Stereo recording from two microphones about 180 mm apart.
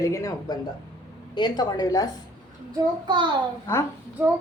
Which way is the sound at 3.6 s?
15° left (ahead or behind).